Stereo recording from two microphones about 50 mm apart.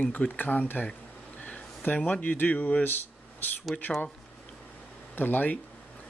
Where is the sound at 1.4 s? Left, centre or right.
Left.